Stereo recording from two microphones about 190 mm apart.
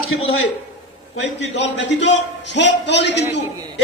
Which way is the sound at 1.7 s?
70° left (ahead or behind).